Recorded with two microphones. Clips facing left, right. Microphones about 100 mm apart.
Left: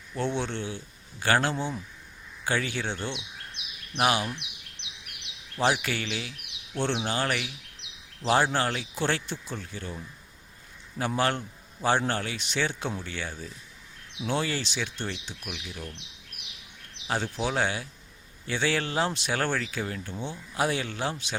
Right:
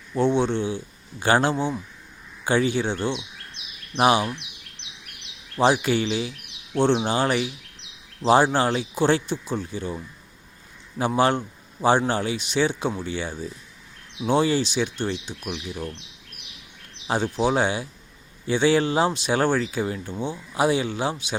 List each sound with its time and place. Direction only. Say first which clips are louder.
0.1 s speech: right 9 dB; 15° right (ahead or behind)
5.5 s speech: right 7 dB; 20° right (ahead or behind)
17.3 s speech: right 7 dB; 20° right (ahead or behind)